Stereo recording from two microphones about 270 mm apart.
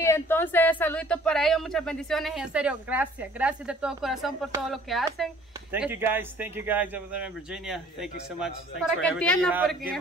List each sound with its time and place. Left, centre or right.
0.0 s speech: centre